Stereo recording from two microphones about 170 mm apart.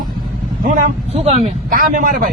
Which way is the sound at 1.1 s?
40° right (ahead or behind).